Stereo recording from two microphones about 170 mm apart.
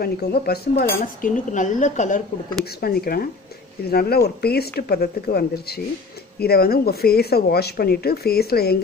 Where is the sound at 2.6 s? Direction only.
65° left (ahead or behind).